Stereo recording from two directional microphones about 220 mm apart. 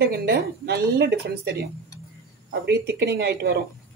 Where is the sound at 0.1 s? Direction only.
45° right (ahead or behind).